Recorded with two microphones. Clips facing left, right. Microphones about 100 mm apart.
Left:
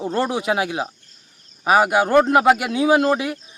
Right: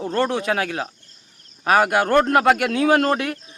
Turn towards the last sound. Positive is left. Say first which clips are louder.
# left 1 dB
turn(degrees=5)  # may be behind; listen again after turning